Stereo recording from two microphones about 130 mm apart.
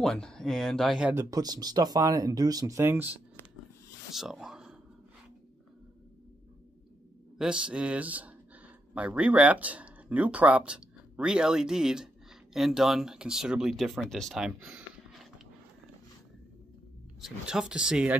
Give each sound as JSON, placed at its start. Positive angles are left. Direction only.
{"t": 0.0, "sound": "speech", "side_deg": 5}
{"t": 1.1, "sound": "speech", "side_deg": -30}
{"t": 4.1, "sound": "a sound", "side_deg": -5}
{"t": 7.3, "sound": "speech", "side_deg": -5}
{"t": 17.2, "sound": "speech", "side_deg": -5}